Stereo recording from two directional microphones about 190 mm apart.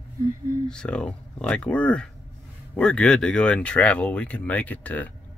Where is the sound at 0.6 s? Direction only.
5° left (ahead or behind).